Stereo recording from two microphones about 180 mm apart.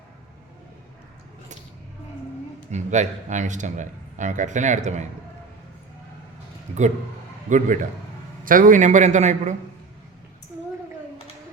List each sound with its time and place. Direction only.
2.7 s a man's voice: 40° right (ahead or behind)
7.5 s a man's voice: 45° right (ahead or behind)